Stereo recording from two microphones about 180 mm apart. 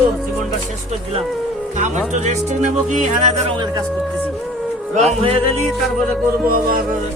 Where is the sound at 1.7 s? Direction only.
40° right (ahead or behind).